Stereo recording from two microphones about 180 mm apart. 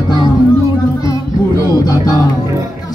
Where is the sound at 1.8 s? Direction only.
20° left (ahead or behind).